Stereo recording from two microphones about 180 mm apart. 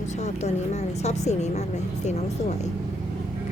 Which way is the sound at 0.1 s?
40° left (ahead or behind).